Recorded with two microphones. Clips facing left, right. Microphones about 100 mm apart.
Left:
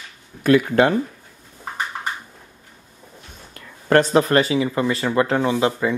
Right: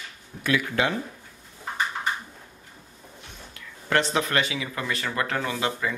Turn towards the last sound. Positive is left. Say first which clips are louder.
# left 8 dB
turn(degrees=25)  # may be behind; listen again after turning